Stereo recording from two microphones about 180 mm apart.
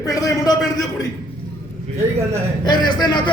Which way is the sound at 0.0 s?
20° left (ahead or behind).